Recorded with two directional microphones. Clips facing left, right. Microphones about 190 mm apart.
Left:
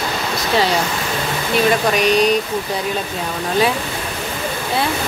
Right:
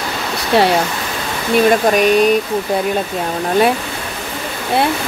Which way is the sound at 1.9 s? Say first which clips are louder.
Right 3 dB; 50° right (ahead or behind).